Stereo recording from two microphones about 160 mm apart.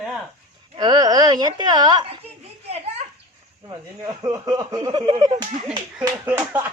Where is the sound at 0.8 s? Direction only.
25° right (ahead or behind).